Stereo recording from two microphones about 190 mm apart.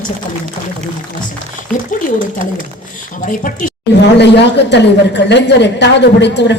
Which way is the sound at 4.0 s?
65° left (ahead or behind).